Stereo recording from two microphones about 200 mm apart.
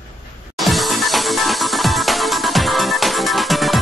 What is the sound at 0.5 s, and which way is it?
Music, centre (ahead or behind).